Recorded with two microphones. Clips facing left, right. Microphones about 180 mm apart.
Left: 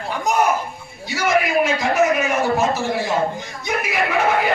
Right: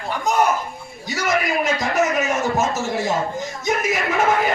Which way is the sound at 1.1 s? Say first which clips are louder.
Left 3 dB; 40° right (ahead or behind).